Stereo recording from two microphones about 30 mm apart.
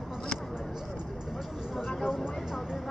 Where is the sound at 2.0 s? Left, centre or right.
Right.